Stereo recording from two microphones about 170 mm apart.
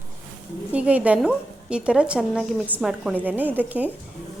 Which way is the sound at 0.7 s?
10° right (ahead or behind).